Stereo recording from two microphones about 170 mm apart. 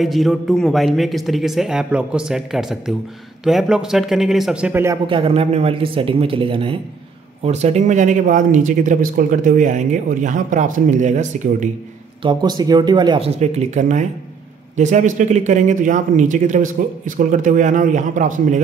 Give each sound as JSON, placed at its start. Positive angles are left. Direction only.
{"t": 0.0, "sound": "speech", "side_deg": 0}
{"t": 5.0, "sound": "speech", "side_deg": -30}
{"t": 12.2, "sound": "speech", "side_deg": -25}
{"t": 13.4, "sound": "speech", "side_deg": -40}